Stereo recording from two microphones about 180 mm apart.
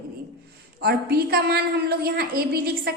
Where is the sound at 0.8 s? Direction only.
60° right (ahead or behind).